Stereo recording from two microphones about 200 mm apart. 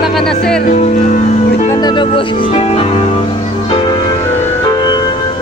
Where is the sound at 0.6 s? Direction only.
40° left (ahead or behind).